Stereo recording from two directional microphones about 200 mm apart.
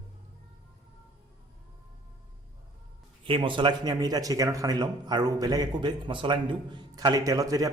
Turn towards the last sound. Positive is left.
turn(degrees=-15)  # may be behind; listen again after turning